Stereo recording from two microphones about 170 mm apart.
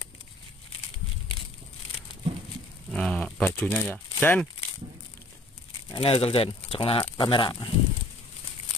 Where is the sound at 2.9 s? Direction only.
5° left (ahead or behind).